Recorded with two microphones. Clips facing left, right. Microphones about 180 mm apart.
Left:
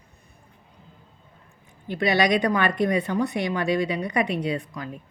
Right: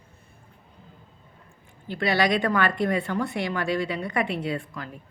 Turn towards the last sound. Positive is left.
turn(degrees=20)  # may be behind; listen again after turning